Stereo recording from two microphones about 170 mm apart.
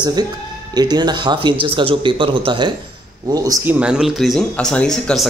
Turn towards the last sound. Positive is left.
turn(degrees=5)  # may be behind; listen again after turning